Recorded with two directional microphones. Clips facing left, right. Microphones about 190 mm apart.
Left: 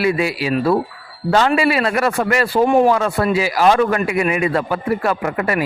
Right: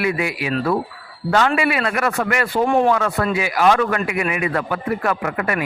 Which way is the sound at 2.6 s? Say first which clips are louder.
Left 3 dB; 10° left (ahead or behind).